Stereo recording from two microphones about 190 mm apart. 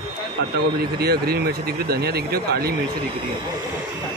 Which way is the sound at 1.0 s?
55° right (ahead or behind).